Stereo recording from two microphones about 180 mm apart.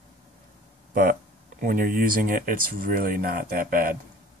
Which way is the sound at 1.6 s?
50° right (ahead or behind).